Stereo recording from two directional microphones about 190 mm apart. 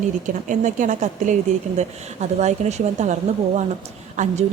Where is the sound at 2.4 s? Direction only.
35° right (ahead or behind).